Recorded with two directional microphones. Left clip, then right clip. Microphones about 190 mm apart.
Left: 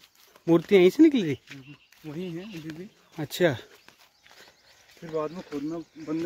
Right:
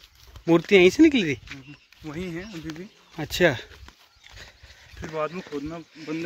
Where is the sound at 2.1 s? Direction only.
30° right (ahead or behind).